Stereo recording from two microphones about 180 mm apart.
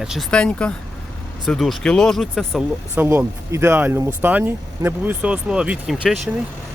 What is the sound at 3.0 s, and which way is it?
Speech, 15° right (ahead or behind).